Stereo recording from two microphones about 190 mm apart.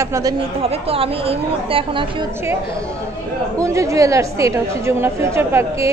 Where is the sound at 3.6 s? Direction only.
15° right (ahead or behind).